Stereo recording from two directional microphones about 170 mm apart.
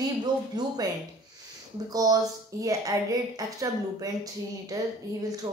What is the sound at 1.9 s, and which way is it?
A woman's voice, 20° right (ahead or behind).